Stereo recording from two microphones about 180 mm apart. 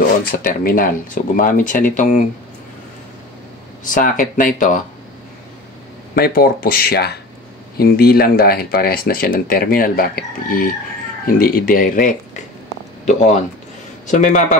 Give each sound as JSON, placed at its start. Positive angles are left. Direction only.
{"t": 0.4, "sound": "speech", "side_deg": 50}
{"t": 3.8, "sound": "speech", "side_deg": 50}
{"t": 6.1, "sound": "speech", "side_deg": 55}